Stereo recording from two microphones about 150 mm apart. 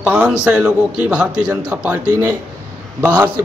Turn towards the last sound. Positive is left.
turn(degrees=-15)  # may be behind; listen again after turning